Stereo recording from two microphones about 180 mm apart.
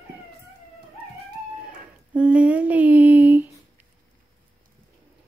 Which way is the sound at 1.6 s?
5° right (ahead or behind).